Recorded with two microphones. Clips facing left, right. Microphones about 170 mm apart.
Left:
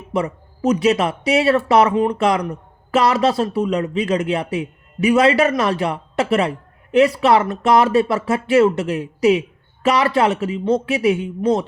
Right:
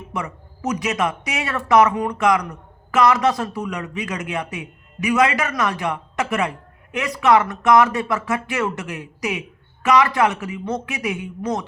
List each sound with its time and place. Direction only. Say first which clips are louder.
0.1 s speech: left 9 dB; 30° left (ahead or behind)